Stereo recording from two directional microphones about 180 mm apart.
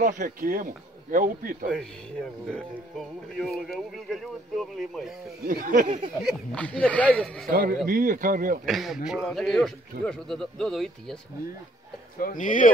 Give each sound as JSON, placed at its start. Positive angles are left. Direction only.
{"t": 0.0, "sound": "speech", "side_deg": -45}
{"t": 2.5, "sound": "speech", "side_deg": 0}
{"t": 5.4, "sound": "speech", "side_deg": -50}
{"t": 6.2, "sound": "speech", "side_deg": 5}
{"t": 7.4, "sound": "speech", "side_deg": -50}
{"t": 8.6, "sound": "speech", "side_deg": 0}
{"t": 12.2, "sound": "speech", "side_deg": 50}